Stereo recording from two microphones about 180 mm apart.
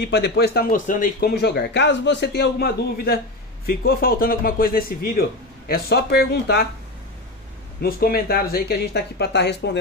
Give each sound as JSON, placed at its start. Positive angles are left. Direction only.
{"t": 0.0, "sound": "speech", "side_deg": 70}
{"t": 7.8, "sound": "speech", "side_deg": 55}